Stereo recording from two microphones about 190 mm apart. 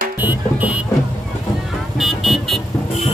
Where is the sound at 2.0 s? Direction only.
Centre (ahead or behind).